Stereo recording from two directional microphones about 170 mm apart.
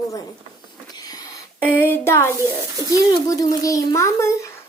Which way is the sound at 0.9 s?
20° left (ahead or behind).